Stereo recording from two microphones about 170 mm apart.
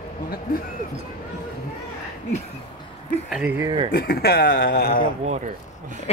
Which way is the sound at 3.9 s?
65° left (ahead or behind).